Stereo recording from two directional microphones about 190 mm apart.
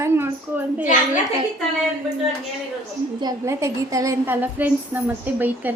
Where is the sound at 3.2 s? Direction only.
20° right (ahead or behind).